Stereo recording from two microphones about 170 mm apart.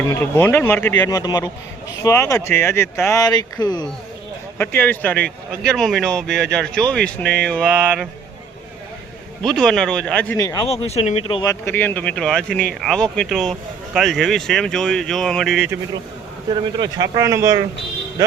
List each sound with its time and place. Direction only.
0.1 s speech: 10° left (ahead or behind)
1.2 s a man's voice: 25° left (ahead or behind)
4.8 s speech: 10° left (ahead or behind)
9.4 s speech: 5° left (ahead or behind); by 10.7 s 20° left (ahead or behind)
10.7 s speech: 40° left (ahead or behind)
11.6 s speech: 10° left (ahead or behind); by 15.8 s 5° right (ahead or behind)
16.5 s speech: 25° right (ahead or behind)